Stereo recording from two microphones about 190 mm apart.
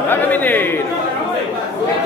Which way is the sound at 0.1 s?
10° left (ahead or behind).